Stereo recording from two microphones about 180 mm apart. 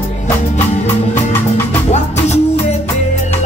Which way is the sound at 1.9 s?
40° left (ahead or behind).